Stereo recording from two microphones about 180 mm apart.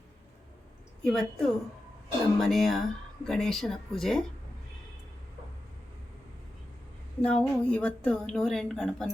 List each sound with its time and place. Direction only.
1.0 s a woman's voice: centre (ahead or behind)
7.2 s a woman's voice: 5° left (ahead or behind)